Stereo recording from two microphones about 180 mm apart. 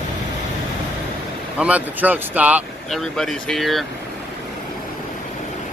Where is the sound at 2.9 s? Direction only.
5° left (ahead or behind).